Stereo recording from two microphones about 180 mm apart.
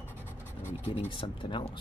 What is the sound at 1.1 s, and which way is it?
Speech, 30° left (ahead or behind).